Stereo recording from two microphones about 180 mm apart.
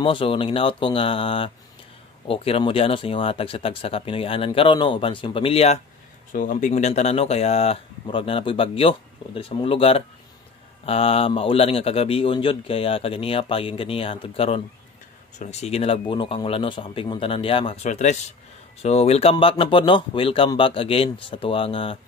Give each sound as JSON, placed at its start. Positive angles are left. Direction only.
{"t": 0.0, "sound": "speech", "side_deg": 30}
{"t": 6.3, "sound": "speech", "side_deg": 45}